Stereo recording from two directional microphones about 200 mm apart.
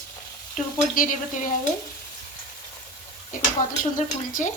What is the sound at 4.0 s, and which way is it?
Speech, 40° left (ahead or behind).